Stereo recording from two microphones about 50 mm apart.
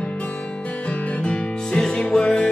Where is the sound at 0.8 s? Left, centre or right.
Left.